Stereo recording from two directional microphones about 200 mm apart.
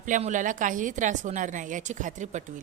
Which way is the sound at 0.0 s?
40° right (ahead or behind).